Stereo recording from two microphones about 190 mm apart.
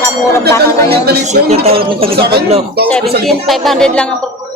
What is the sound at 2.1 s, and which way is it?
Speech, 55° right (ahead or behind).